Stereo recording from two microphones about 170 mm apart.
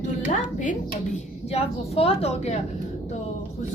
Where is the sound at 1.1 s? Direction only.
40° left (ahead or behind).